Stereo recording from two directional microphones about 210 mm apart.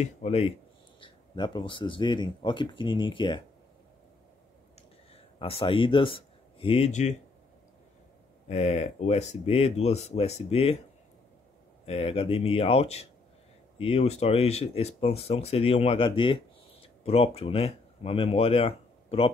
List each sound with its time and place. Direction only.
0.0 s speech: 30° left (ahead or behind)
5.1 s speech: 25° left (ahead or behind)
8.5 s speech: 30° left (ahead or behind)
11.8 s speech: 30° left (ahead or behind)